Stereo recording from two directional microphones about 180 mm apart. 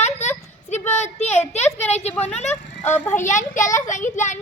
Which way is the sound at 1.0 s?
40° left (ahead or behind).